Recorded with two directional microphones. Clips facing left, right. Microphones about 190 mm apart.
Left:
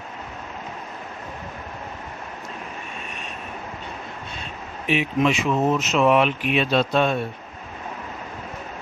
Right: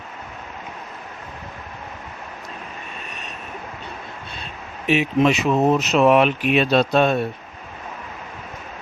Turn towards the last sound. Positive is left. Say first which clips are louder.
# right 3 dB
turn(degrees=-40)  # may be behind; listen again after turning